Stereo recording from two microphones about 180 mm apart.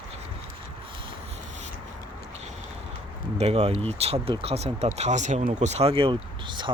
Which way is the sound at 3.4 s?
35° right (ahead or behind).